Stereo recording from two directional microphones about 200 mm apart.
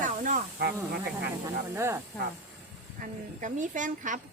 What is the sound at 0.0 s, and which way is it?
Snake, 40° right (ahead or behind).